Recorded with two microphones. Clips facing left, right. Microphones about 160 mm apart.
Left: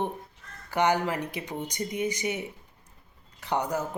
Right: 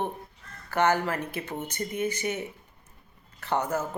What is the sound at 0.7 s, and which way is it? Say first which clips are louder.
Speech: even; 15° left (ahead or behind).